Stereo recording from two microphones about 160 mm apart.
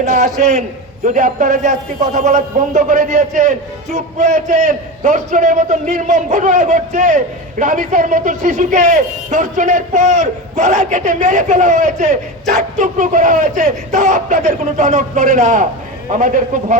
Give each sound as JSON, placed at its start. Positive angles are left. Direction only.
{"t": 0.0, "sound": "speech", "side_deg": -50}